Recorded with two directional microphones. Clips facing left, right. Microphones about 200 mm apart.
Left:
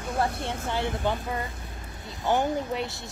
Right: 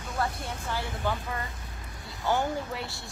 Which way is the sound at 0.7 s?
25° left (ahead or behind).